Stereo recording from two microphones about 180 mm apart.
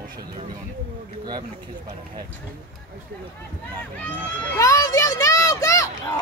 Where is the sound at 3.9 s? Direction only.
10° left (ahead or behind).